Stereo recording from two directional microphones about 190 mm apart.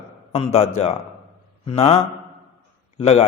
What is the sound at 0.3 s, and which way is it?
A man's voice, 30° left (ahead or behind).